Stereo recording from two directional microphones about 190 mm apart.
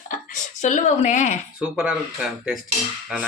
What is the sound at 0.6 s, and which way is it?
Speech, 40° left (ahead or behind).